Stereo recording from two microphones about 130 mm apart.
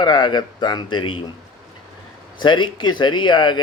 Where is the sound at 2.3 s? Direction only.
35° left (ahead or behind).